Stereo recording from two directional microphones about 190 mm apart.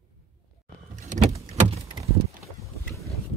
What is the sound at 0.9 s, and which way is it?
Vehicle, 40° right (ahead or behind).